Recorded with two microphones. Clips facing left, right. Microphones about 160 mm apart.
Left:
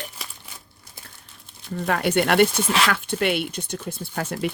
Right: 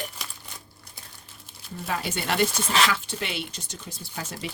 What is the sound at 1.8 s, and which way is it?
Speech, 60° left (ahead or behind).